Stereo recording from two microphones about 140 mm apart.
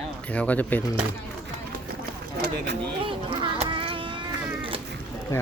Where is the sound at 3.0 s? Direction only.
35° right (ahead or behind).